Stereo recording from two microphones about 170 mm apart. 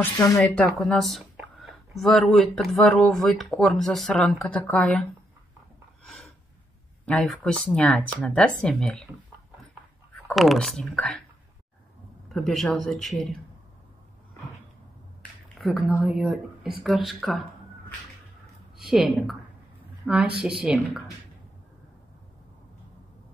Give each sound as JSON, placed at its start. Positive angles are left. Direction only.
{"t": 0.0, "sound": "speech", "side_deg": 20}
{"t": 0.4, "sound": "speech", "side_deg": 5}
{"t": 7.1, "sound": "speech", "side_deg": 5}
{"t": 10.2, "sound": "speech", "side_deg": 0}
{"t": 12.3, "sound": "speech", "side_deg": 0}
{"t": 15.6, "sound": "speech", "side_deg": 0}
{"t": 18.8, "sound": "speech", "side_deg": -5}